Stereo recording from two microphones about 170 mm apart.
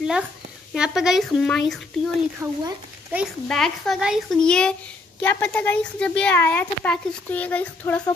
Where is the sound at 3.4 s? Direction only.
5° left (ahead or behind).